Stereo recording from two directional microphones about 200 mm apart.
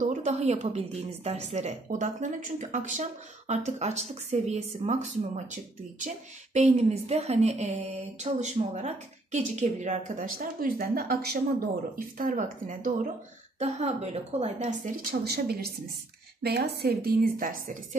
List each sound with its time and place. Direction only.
0.0 s a woman's voice: 35° right (ahead or behind)